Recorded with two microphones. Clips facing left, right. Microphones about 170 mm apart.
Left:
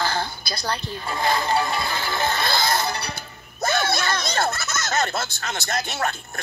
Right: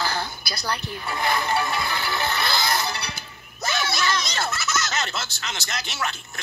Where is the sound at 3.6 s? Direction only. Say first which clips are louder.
Left 3 dB; 55° left (ahead or behind).